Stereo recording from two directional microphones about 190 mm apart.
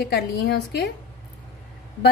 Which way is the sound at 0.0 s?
60° left (ahead or behind).